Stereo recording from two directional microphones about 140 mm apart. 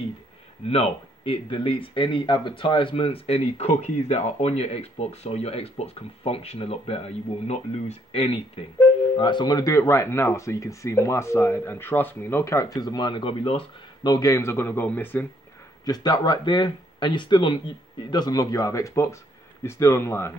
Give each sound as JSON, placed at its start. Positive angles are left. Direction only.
{"t": 0.7, "sound": "speech", "side_deg": 45}
{"t": 14.0, "sound": "speech", "side_deg": 25}
{"t": 15.8, "sound": "speech", "side_deg": 25}